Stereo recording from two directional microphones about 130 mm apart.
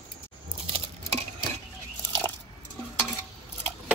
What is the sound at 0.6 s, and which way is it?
Dishes, 45° right (ahead or behind).